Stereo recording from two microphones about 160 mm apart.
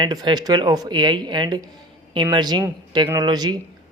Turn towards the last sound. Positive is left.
turn(degrees=-25)  # may be behind; listen again after turning